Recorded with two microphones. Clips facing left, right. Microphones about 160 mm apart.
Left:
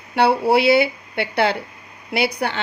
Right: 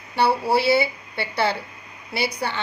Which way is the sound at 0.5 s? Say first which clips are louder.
Left 4 dB; 65° left (ahead or behind).